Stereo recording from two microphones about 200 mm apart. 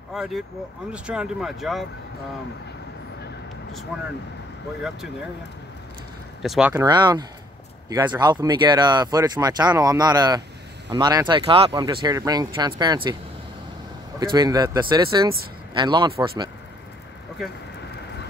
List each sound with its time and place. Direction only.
0.1 s speech: centre (ahead or behind)
3.9 s speech: 5° right (ahead or behind)
6.4 s speech: centre (ahead or behind)
6.7 s speech: 20° right (ahead or behind)
14.3 s speech: 20° right (ahead or behind)